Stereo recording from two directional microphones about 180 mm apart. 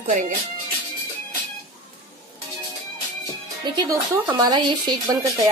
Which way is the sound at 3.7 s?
20° right (ahead or behind).